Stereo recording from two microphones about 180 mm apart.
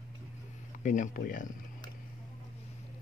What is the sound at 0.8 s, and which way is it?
Speech, 45° left (ahead or behind).